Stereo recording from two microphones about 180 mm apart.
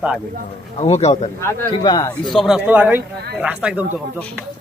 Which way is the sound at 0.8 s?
35° left (ahead or behind).